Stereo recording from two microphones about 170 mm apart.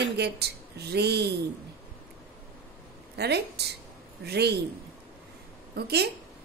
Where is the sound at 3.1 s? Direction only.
75° right (ahead or behind).